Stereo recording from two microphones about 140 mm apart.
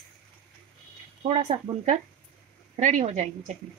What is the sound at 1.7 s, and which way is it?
Speech, 40° right (ahead or behind).